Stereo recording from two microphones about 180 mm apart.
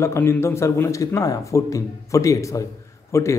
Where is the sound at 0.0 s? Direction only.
15° left (ahead or behind).